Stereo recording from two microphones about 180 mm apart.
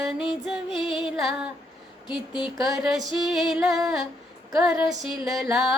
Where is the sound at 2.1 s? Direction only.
25° left (ahead or behind).